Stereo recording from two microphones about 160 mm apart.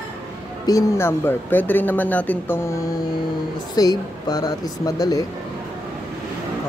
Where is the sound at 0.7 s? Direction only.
20° left (ahead or behind).